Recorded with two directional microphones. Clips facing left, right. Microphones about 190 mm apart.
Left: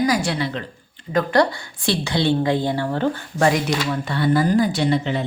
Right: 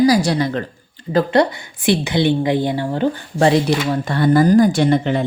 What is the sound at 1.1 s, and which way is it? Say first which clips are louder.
Speech: right 3 dB; 25° right (ahead or behind).